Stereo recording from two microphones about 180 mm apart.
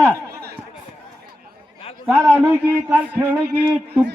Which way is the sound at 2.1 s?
15° right (ahead or behind).